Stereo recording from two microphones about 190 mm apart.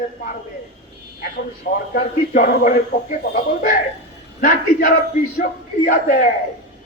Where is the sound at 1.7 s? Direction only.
50° left (ahead or behind).